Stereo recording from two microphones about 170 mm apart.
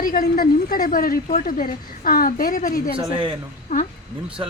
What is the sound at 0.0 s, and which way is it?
A woman's voice, 55° left (ahead or behind).